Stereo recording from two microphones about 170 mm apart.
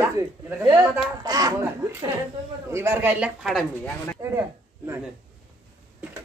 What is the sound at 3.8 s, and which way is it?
Speech, 10° left (ahead or behind).